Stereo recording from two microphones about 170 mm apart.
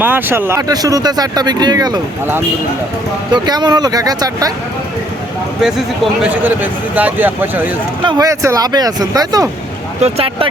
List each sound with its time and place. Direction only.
0.0 s speech: 10° right (ahead or behind)
3.3 s speech: 25° right (ahead or behind)
6.2 s a man's voice: 10° right (ahead or behind)
10.0 s speech: 35° right (ahead or behind)